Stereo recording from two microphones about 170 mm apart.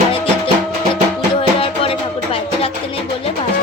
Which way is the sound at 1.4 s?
35° left (ahead or behind).